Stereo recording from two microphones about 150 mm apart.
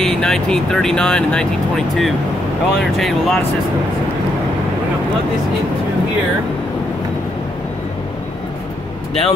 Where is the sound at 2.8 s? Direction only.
Centre (ahead or behind).